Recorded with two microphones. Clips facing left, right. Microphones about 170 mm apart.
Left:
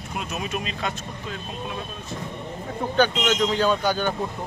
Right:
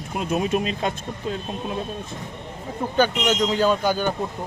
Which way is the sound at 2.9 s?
10° right (ahead or behind).